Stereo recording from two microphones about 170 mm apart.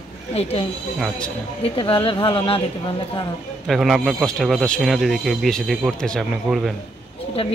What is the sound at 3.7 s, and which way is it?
Speech, centre (ahead or behind).